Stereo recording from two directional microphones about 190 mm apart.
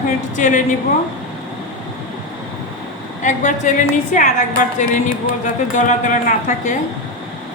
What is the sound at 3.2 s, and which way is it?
Speech, 40° left (ahead or behind).